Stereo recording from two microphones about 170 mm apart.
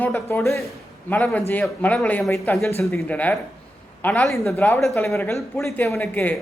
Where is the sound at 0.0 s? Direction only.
10° left (ahead or behind).